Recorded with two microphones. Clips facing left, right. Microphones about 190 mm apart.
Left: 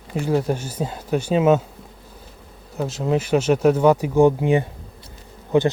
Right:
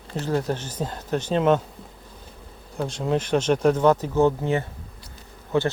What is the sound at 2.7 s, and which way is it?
Speech, 5° left (ahead or behind).